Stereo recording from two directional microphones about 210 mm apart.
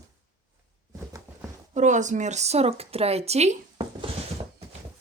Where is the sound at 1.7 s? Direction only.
35° right (ahead or behind).